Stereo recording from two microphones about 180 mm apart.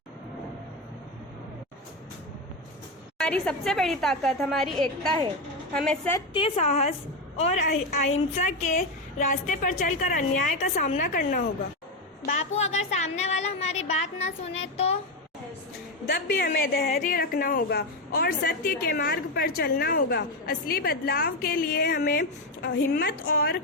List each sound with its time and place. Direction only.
3.2 s a woman's voice: 5° left (ahead or behind)
6.1 s a woman's voice: 30° left (ahead or behind); by 11.4 s 50° left (ahead or behind)
12.5 s a woman's voice: 40° left (ahead or behind)
16.0 s a woman's voice: 60° left (ahead or behind)